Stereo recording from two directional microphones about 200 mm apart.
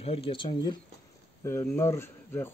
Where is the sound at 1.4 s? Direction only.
10° left (ahead or behind).